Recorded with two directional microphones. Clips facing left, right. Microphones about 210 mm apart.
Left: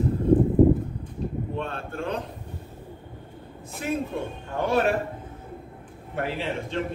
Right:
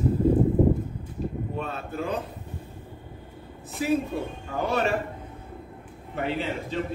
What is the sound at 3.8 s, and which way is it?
A man's voice, 5° right (ahead or behind).